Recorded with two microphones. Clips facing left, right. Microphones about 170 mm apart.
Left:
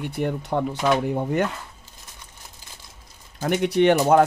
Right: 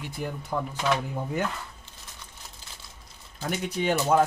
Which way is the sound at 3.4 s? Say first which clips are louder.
Left 9 dB; 70° left (ahead or behind).